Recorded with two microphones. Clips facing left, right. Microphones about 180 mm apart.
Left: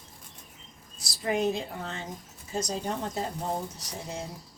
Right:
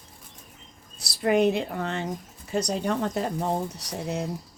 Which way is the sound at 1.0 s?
65° right (ahead or behind).